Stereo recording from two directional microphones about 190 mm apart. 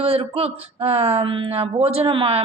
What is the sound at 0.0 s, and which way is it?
A man's voice, 30° right (ahead or behind).